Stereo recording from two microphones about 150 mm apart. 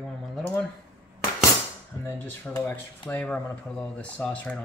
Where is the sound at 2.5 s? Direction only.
15° left (ahead or behind).